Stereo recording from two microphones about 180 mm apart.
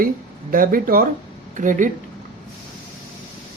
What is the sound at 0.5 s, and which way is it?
Speech, 50° right (ahead or behind).